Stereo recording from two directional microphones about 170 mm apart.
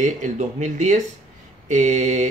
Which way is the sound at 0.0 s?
45° right (ahead or behind).